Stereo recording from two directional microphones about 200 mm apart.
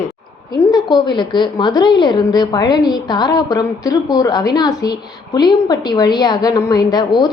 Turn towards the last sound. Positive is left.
turn(degrees=20)  # may be behind; listen again after turning